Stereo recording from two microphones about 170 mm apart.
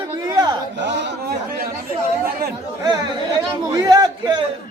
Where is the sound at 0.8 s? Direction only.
90° right.